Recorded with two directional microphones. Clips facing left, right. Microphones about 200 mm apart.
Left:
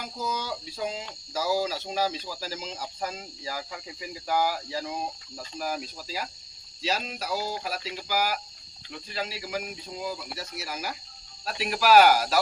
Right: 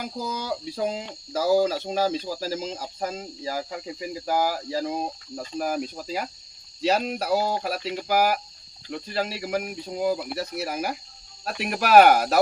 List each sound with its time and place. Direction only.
0.3 s speech: 55° right (ahead or behind)